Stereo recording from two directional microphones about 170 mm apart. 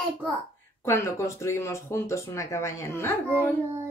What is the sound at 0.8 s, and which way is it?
Speech, 15° left (ahead or behind).